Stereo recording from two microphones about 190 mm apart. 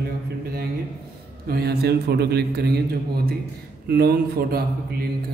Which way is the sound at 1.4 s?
55° right (ahead or behind).